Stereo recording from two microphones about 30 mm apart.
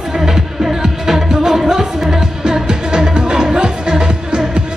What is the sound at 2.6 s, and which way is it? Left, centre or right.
Music, right.